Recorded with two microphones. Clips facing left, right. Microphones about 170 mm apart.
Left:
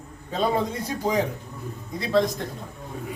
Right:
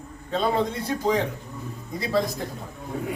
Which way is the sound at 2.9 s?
75° right (ahead or behind).